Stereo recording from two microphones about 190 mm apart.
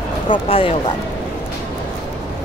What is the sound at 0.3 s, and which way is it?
Speech, 30° left (ahead or behind).